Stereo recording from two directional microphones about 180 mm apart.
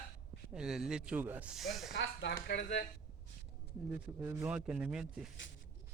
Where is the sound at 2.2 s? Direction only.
90° left.